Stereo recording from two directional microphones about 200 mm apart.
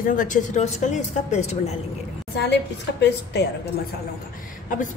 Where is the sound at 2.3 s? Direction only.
60° left (ahead or behind).